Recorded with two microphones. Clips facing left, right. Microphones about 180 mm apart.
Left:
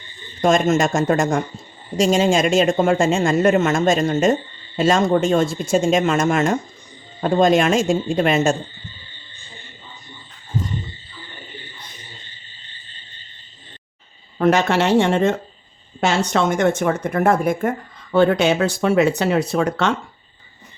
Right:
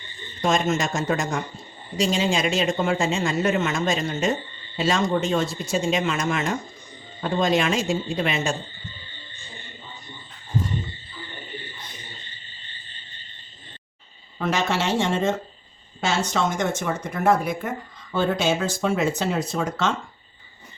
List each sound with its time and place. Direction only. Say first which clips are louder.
0.4 s speech: left 6 dB; 50° left (ahead or behind)
14.3 s speech: left 8 dB; 55° left (ahead or behind)
18.1 s speech: left 7 dB; 65° left (ahead or behind)